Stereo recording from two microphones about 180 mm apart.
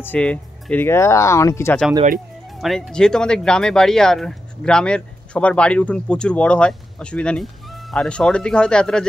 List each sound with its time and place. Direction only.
0.0 s speech: 10° left (ahead or behind)
2.6 s speech: centre (ahead or behind)